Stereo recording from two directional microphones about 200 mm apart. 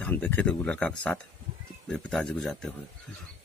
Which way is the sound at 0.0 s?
10° left (ahead or behind).